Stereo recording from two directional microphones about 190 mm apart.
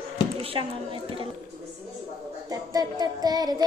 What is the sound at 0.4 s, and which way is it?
Speech, 30° right (ahead or behind).